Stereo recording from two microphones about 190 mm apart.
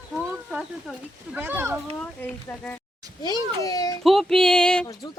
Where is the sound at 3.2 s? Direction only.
20° left (ahead or behind).